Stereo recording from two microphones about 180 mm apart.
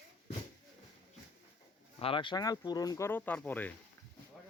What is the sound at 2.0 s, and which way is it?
Speech, 30° left (ahead or behind).